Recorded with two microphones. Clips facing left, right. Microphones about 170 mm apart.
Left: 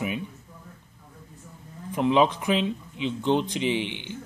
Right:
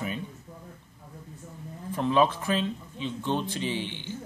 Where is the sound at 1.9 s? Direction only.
15° left (ahead or behind).